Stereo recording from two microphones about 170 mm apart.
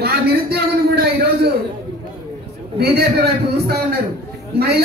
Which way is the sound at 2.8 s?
70° right (ahead or behind).